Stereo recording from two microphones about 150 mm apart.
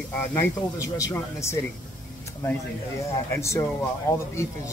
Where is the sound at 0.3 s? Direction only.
15° left (ahead or behind).